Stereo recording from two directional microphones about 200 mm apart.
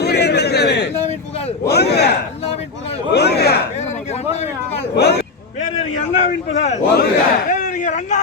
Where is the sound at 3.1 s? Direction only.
55° left (ahead or behind).